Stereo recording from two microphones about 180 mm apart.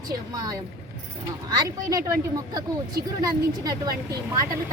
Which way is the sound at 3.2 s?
20° right (ahead or behind).